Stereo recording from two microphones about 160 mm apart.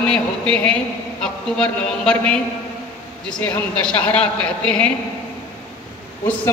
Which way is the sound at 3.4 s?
10° left (ahead or behind).